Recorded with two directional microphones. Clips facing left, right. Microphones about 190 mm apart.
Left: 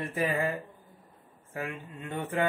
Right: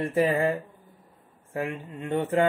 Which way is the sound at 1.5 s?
30° right (ahead or behind).